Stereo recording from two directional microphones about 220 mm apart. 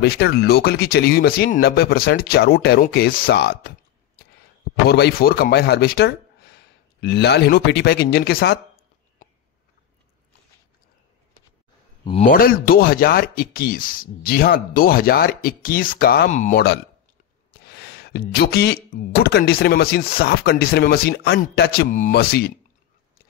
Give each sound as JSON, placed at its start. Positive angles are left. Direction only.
{"t": 0.0, "sound": "speech", "side_deg": 45}
{"t": 4.8, "sound": "speech", "side_deg": 50}
{"t": 12.0, "sound": "speech", "side_deg": 25}
{"t": 12.3, "sound": "speech", "side_deg": 40}
{"t": 16.5, "sound": "speech", "side_deg": 50}